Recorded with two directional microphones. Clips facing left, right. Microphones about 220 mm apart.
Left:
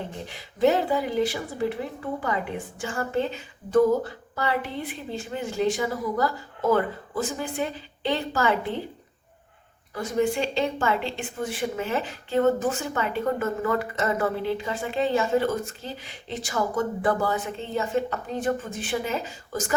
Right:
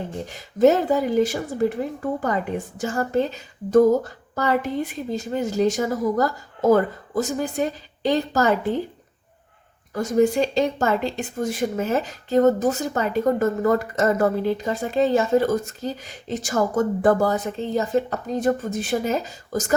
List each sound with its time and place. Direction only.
0.3 s speech: 45° right (ahead or behind)
9.9 s speech: 45° right (ahead or behind)